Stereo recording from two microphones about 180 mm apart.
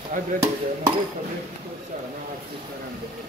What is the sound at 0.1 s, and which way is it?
Speech, 45° right (ahead or behind).